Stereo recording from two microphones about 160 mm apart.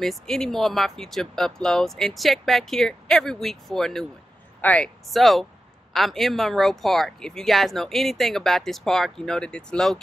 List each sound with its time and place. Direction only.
0.0 s speech: centre (ahead or behind)